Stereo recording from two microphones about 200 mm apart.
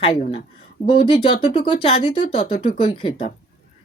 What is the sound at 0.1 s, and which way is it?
Speech, 30° left (ahead or behind).